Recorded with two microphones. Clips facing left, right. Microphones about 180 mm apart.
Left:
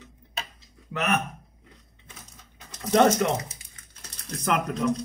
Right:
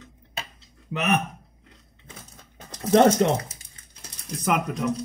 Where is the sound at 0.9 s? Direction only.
20° right (ahead or behind).